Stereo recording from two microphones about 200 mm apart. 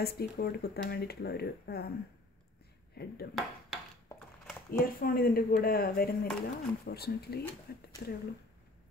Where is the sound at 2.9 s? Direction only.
50° left (ahead or behind).